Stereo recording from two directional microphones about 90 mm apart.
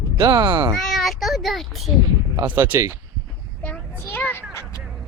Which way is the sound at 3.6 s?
15° left (ahead or behind).